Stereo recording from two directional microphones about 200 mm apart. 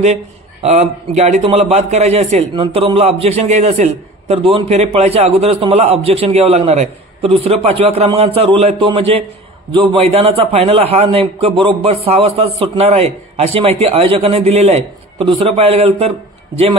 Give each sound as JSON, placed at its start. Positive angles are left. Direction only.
{"t": 0.0, "sound": "a man's voice", "side_deg": -30}